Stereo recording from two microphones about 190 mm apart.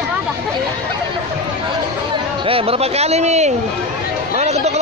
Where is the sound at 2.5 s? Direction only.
30° right (ahead or behind).